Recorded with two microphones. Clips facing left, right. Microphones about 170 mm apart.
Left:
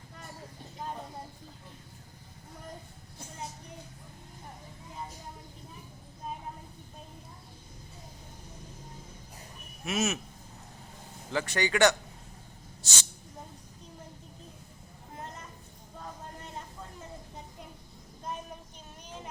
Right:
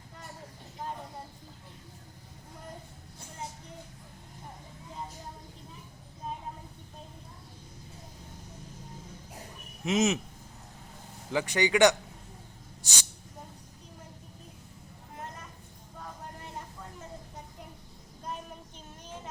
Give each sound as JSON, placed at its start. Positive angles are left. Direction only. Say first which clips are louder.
{"t": 9.8, "sound": "speech", "louder": "right 4 dB", "side_deg": -20}
{"t": 11.3, "sound": "speech", "louder": "right 3 dB", "side_deg": -15}